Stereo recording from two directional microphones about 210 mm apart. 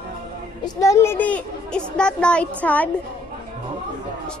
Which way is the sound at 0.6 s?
15° left (ahead or behind).